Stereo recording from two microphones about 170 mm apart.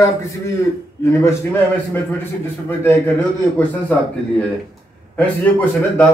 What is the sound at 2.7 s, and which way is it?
Speech, 15° left (ahead or behind).